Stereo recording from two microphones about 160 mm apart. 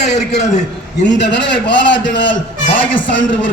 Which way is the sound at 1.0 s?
90° left.